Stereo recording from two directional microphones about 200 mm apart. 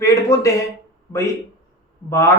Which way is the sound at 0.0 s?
15° left (ahead or behind).